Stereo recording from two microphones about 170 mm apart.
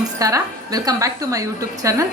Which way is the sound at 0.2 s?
20° right (ahead or behind).